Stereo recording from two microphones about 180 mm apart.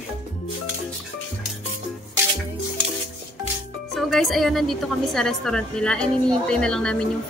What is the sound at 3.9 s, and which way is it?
A woman's voice, centre (ahead or behind).